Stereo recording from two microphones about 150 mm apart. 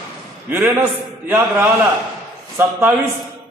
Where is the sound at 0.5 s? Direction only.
15° right (ahead or behind).